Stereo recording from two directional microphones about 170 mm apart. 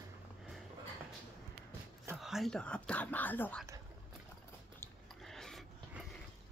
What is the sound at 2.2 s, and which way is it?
Speech, centre (ahead or behind).